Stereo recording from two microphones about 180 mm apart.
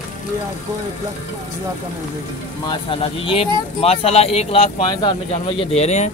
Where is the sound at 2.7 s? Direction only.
30° left (ahead or behind).